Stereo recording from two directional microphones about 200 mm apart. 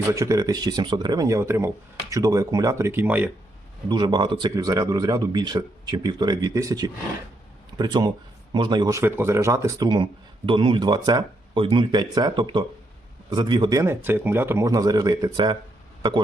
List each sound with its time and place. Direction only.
0.1 s speech: 15° right (ahead or behind)
3.8 s speech: 20° right (ahead or behind)